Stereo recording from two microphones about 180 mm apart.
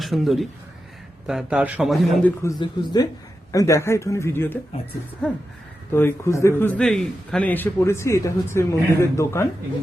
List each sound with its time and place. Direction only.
0.0 s a man's voice: centre (ahead or behind)
2.2 s a man's voice: 15° left (ahead or behind)
4.7 s speech: 35° left (ahead or behind)
5.9 s a man's voice: 15° left (ahead or behind)